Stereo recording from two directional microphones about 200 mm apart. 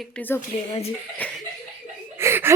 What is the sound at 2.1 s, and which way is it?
Laughter, 10° right (ahead or behind).